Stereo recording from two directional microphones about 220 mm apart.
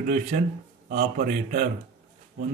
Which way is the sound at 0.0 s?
35° right (ahead or behind).